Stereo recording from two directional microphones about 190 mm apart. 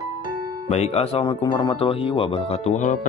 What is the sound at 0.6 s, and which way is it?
Speech, 35° left (ahead or behind).